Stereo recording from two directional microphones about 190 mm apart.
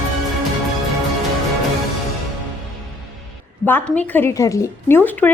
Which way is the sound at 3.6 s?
10° left (ahead or behind).